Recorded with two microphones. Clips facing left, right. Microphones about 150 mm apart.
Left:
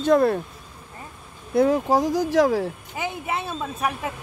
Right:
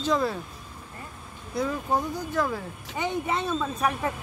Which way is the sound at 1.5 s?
70° left (ahead or behind).